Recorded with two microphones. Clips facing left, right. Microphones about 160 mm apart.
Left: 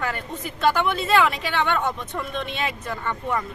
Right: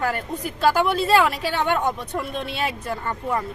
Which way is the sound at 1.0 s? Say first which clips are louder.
Right 2 dB; 35° right (ahead or behind).